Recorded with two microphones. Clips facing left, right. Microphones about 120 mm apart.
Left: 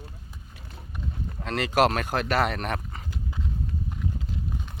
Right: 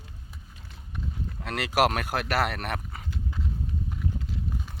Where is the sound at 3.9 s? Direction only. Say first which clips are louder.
Left 1 dB; centre (ahead or behind).